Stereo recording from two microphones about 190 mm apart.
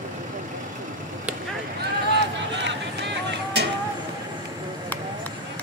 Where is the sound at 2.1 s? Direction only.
65° right (ahead or behind).